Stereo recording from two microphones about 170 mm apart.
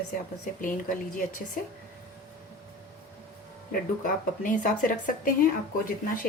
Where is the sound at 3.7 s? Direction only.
50° left (ahead or behind).